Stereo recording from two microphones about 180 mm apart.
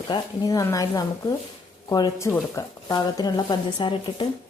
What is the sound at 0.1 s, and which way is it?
Speech, 20° left (ahead or behind).